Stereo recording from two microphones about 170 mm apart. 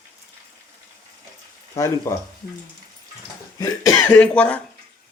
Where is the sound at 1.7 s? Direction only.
15° left (ahead or behind).